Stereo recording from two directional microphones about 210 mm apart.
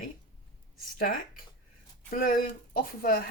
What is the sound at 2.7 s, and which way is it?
Speech, 45° left (ahead or behind).